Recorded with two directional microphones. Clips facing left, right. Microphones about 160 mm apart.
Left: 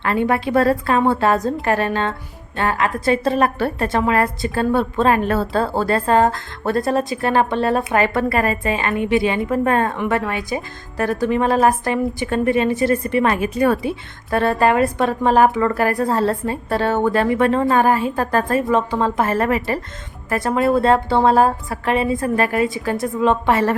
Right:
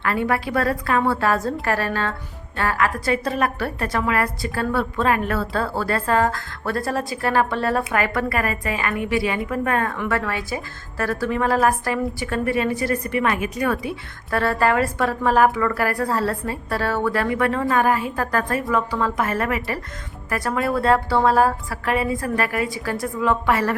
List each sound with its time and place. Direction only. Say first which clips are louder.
0.0 s a woman's voice: left 3 dB; 25° left (ahead or behind)